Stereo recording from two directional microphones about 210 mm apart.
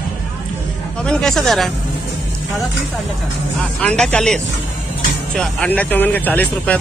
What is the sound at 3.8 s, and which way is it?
Speech, 5° left (ahead or behind).